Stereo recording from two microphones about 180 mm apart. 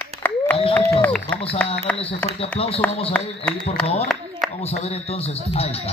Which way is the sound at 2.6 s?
30° left (ahead or behind).